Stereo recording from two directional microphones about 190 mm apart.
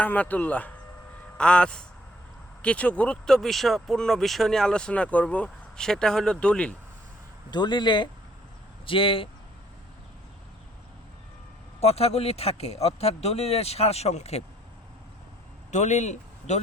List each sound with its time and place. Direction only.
0.0 s speech: 10° left (ahead or behind)
7.5 s speech: 25° left (ahead or behind)
11.8 s speech: 35° left (ahead or behind)
15.7 s speech: 40° left (ahead or behind)